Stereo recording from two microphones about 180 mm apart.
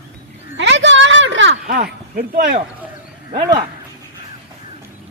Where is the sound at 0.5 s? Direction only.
80° right.